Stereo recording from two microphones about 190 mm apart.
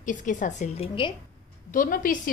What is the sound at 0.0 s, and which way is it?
A woman's voice, 45° left (ahead or behind).